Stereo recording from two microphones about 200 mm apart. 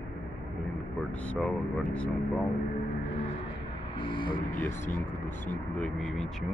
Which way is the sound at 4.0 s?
25° left (ahead or behind).